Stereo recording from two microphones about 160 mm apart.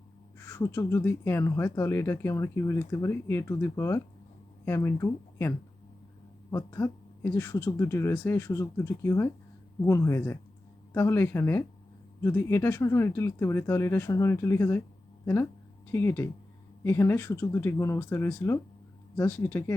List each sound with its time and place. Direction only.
0.3 s speech: 15° left (ahead or behind)
15.9 s speech: 15° left (ahead or behind)